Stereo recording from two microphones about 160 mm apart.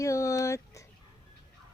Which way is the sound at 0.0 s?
20° left (ahead or behind).